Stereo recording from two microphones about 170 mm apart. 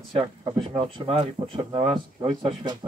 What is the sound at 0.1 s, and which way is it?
Speech, 30° right (ahead or behind).